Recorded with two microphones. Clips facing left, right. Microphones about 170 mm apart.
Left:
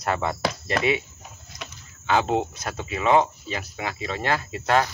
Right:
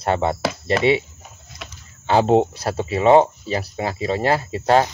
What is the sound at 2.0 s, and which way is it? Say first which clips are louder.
Speech: right 7 dB; 35° right (ahead or behind).